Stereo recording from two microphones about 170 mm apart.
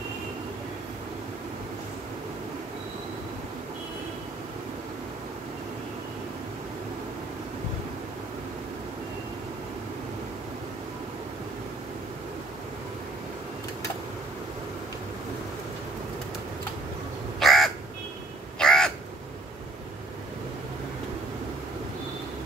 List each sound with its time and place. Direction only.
17.4 s crow: centre (ahead or behind)